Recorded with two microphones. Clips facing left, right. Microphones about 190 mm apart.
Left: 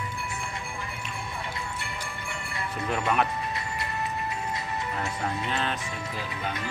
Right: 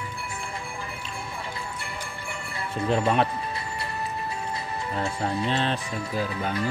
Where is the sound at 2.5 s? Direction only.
30° right (ahead or behind).